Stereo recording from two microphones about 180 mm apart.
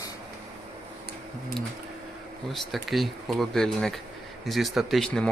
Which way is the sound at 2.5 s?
Centre (ahead or behind).